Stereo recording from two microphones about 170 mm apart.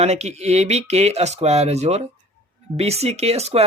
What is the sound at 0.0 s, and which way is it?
Speech, 40° right (ahead or behind).